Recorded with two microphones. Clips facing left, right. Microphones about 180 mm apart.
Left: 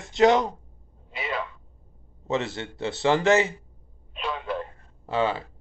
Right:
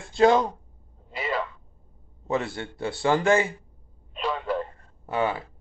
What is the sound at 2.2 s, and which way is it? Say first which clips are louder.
Speech: even; 25° left (ahead or behind).